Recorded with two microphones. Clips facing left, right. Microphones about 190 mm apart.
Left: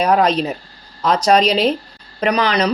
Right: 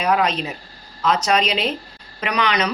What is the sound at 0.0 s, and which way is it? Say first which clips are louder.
Speech: left 5 dB; 40° left (ahead or behind).